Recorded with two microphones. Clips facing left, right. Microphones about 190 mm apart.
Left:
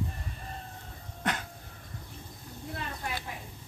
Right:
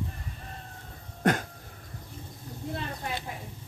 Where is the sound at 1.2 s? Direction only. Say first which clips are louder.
Right 8 dB; 45° right (ahead or behind).